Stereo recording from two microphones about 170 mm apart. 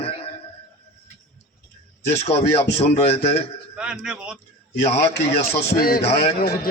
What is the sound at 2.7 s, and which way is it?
Speech, 40° left (ahead or behind).